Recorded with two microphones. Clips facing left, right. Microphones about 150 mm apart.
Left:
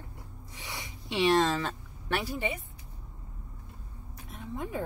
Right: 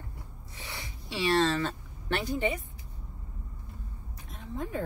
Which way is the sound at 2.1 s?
5° left (ahead or behind).